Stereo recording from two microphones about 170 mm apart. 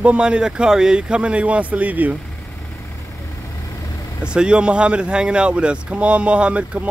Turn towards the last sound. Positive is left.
turn(degrees=-5)  # may be behind; listen again after turning